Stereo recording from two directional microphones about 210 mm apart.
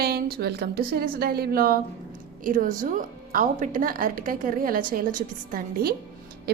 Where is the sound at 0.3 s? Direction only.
45° right (ahead or behind).